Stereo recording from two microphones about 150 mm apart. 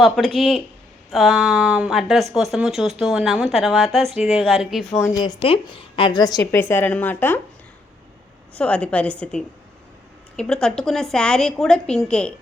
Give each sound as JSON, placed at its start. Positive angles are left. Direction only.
{"t": 0.0, "sound": "a woman's voice", "side_deg": 0}
{"t": 5.0, "sound": "a woman's voice", "side_deg": 25}
{"t": 8.5, "sound": "a woman's voice", "side_deg": 10}